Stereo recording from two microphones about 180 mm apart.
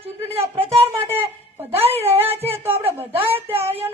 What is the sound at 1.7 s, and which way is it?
Speech, 35° right (ahead or behind).